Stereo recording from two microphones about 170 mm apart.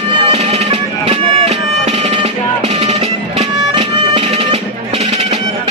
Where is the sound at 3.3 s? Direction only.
35° right (ahead or behind).